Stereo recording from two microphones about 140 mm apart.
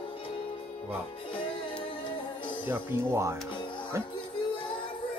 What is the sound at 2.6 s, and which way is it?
Speech, 20° right (ahead or behind).